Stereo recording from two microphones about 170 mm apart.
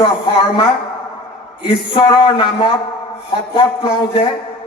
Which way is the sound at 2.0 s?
25° left (ahead or behind).